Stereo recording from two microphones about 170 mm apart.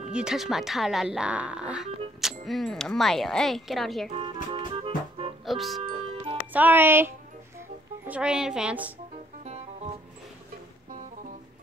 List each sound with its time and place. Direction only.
0.1 s speech: 5° right (ahead or behind)
4.1 s music: 30° right (ahead or behind)
5.4 s speech: centre (ahead or behind)
6.5 s speech: 10° right (ahead or behind)
8.1 s speech: 5° right (ahead or behind)